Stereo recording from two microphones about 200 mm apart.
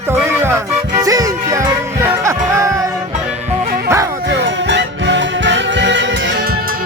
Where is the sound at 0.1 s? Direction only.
10° right (ahead or behind).